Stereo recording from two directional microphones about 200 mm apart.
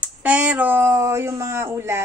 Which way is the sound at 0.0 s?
5° right (ahead or behind).